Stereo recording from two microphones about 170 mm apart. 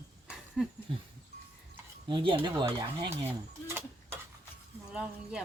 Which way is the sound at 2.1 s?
30° right (ahead or behind).